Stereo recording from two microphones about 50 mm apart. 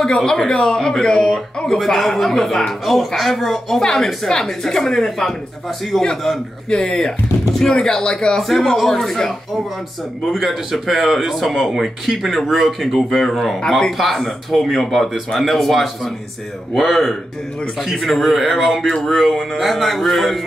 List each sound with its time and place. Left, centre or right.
0.0 s a woman's voice: centre
6.7 s a woman's voice: centre
8.5 s a woman's voice: centre
10.3 s speech: centre